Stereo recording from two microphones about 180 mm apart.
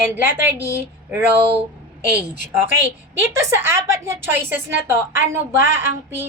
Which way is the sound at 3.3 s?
15° right (ahead or behind).